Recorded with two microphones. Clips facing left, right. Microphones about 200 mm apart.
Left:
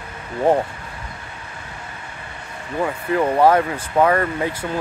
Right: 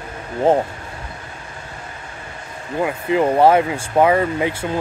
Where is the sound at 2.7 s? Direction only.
15° right (ahead or behind).